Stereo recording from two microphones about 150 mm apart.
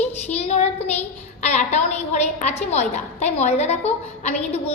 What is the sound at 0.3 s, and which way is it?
A child's voice, 45° left (ahead or behind).